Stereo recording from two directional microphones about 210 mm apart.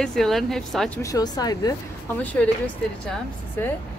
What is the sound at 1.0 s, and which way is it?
Speech, 15° left (ahead or behind).